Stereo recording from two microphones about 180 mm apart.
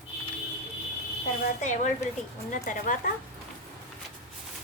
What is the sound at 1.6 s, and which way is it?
A woman's voice, 40° left (ahead or behind).